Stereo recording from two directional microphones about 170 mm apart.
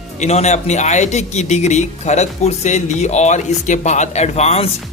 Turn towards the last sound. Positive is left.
turn(degrees=40)  # may be behind; listen again after turning